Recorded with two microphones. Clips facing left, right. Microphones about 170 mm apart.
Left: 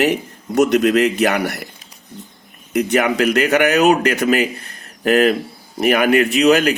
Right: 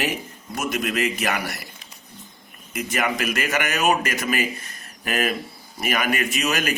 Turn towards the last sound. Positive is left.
turn(degrees=65)  # may be behind; listen again after turning